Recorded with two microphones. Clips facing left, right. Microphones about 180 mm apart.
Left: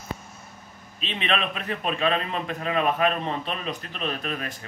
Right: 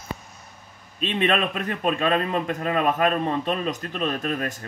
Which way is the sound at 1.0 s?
45° right (ahead or behind).